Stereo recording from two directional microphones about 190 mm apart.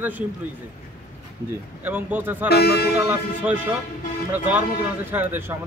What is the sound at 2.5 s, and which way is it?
Speech, 60° left (ahead or behind).